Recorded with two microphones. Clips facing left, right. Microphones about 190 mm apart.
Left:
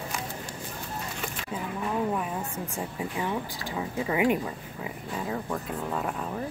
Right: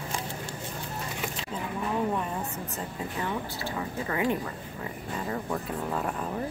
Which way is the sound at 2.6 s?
10° left (ahead or behind).